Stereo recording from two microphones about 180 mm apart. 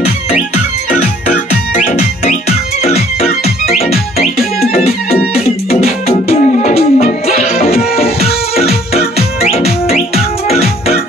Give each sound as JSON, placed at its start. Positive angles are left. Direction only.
{"t": 2.2, "sound": "music", "side_deg": 35}
{"t": 4.6, "sound": "music", "side_deg": 35}